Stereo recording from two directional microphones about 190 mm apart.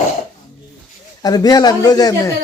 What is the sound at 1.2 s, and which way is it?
Speech, 20° left (ahead or behind).